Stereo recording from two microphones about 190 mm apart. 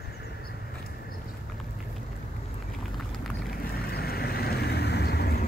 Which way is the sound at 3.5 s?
55° left (ahead or behind).